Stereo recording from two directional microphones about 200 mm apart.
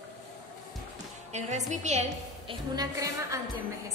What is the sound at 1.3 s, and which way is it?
A woman's voice, 35° right (ahead or behind).